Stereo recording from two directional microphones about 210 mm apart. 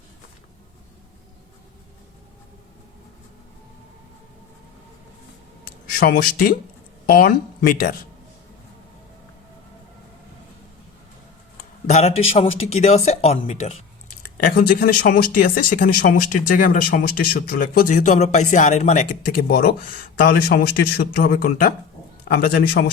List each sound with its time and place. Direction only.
6.0 s speech: 40° left (ahead or behind)
11.9 s speech: 30° left (ahead or behind); by 22.9 s 50° left (ahead or behind)